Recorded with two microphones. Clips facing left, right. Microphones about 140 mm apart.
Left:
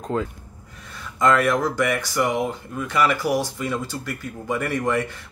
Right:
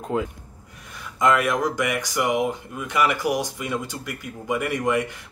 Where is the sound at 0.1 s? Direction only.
15° right (ahead or behind).